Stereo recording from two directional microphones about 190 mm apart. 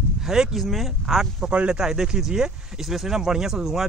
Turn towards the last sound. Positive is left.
turn(degrees=0)  # may be behind; listen again after turning